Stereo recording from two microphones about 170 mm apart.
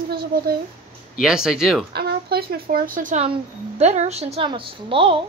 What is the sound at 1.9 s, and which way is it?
Speech, 65° right (ahead or behind).